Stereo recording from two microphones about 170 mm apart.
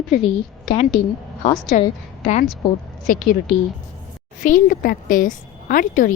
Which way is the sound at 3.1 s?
55° left (ahead or behind).